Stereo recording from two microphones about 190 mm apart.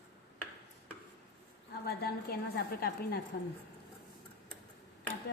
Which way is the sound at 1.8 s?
55° left (ahead or behind).